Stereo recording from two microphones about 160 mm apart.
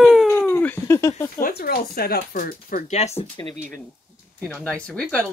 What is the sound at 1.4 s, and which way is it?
Speech, 65° left (ahead or behind).